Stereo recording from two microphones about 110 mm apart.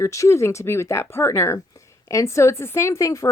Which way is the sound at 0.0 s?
30° left (ahead or behind).